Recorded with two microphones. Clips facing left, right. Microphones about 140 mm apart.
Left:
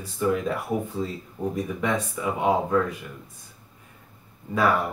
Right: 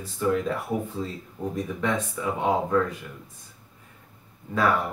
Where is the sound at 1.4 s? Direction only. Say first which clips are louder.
Left 1 dB; 15° left (ahead or behind).